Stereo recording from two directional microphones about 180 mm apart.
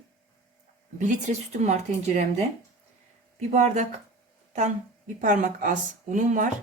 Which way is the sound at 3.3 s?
40° right (ahead or behind).